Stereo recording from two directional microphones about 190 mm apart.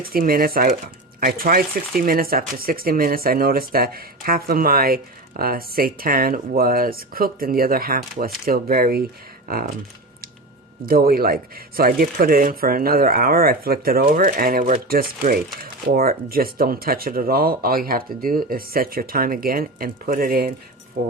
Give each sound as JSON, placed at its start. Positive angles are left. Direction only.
{"t": 0.1, "sound": "speech", "side_deg": -50}
{"t": 10.8, "sound": "speech", "side_deg": -50}